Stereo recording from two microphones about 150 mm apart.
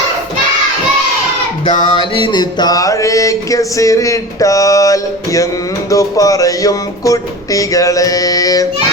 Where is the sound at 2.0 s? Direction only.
35° left (ahead or behind).